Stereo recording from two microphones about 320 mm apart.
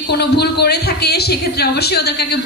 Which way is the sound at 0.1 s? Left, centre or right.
Left.